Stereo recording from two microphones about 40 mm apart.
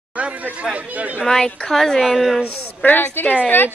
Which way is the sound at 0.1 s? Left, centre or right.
Right.